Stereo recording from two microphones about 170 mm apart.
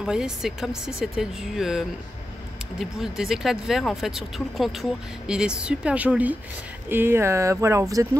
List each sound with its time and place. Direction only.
0.0 s speech: 5° right (ahead or behind)